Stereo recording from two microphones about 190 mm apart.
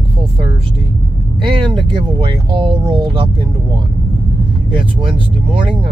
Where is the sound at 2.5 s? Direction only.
25° right (ahead or behind).